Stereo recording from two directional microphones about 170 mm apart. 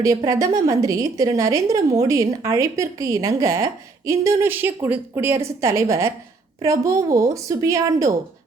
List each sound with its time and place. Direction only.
0.0 s a woman's voice: 20° right (ahead or behind)